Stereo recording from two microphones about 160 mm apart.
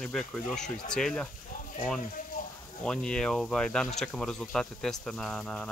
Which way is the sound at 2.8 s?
5° left (ahead or behind).